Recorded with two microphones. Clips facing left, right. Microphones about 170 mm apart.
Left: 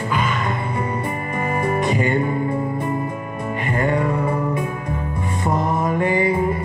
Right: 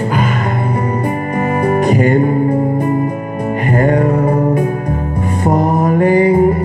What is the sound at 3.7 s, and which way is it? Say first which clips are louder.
Music: right 7 dB; 40° right (ahead or behind).